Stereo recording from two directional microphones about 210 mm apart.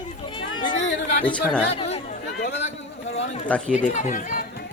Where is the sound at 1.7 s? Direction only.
30° left (ahead or behind).